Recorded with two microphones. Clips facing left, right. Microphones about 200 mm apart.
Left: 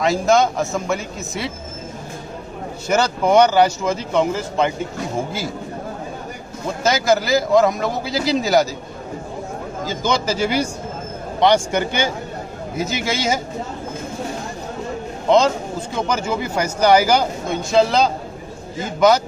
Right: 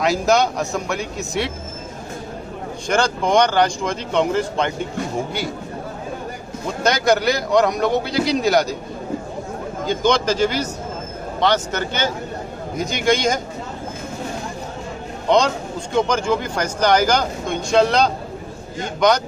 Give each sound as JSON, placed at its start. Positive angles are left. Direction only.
{"t": 0.0, "sound": "a man's voice", "side_deg": 0}
{"t": 2.9, "sound": "a man's voice", "side_deg": 5}
{"t": 6.8, "sound": "a man's voice", "side_deg": 5}
{"t": 9.8, "sound": "a man's voice", "side_deg": 5}
{"t": 15.2, "sound": "a man's voice", "side_deg": 5}